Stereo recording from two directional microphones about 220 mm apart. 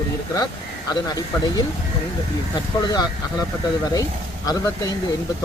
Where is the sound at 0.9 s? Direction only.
15° left (ahead or behind).